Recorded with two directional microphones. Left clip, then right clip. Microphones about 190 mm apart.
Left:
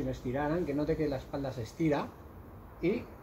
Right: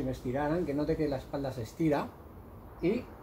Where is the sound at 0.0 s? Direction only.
Centre (ahead or behind).